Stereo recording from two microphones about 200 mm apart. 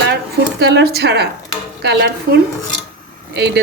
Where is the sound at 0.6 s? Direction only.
55° right (ahead or behind).